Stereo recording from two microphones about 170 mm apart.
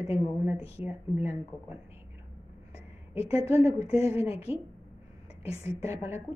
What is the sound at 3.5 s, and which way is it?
Speech, 15° right (ahead or behind).